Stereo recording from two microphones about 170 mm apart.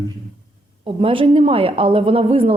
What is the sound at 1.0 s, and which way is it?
A woman's voice, 30° right (ahead or behind).